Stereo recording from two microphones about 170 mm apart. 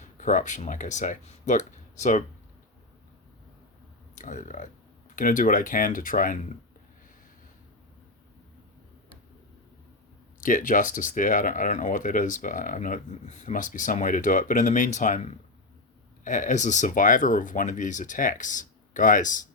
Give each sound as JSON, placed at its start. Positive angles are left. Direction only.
{"t": 0.0, "sound": "speech", "side_deg": 45}
{"t": 4.1, "sound": "speech", "side_deg": 50}
{"t": 10.4, "sound": "speech", "side_deg": 50}